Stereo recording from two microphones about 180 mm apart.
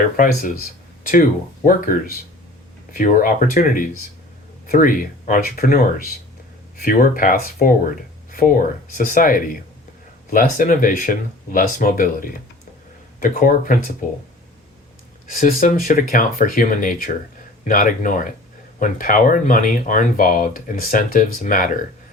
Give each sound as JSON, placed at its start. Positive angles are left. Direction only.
{"t": 0.2, "sound": "speech", "side_deg": 45}
{"t": 1.6, "sound": "speech", "side_deg": 50}
{"t": 15.4, "sound": "speech", "side_deg": 50}